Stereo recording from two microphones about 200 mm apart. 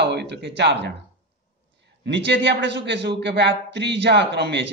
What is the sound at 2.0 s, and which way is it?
A man's voice, 60° right (ahead or behind).